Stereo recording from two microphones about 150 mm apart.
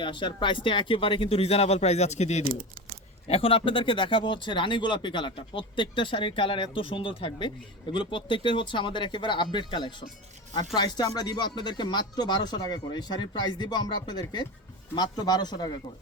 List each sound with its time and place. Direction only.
0.0 s speech: 30° left (ahead or behind); by 2.4 s 50° left (ahead or behind)
2.4 s speech: 80° right
3.2 s speech: 40° left (ahead or behind)